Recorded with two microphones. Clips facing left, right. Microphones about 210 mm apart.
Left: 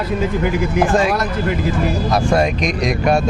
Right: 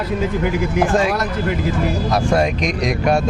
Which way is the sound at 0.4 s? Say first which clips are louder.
Left 1 dB; 20° left (ahead or behind).